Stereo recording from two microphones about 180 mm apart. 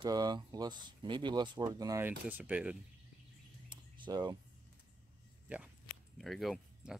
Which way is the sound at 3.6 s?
25° right (ahead or behind).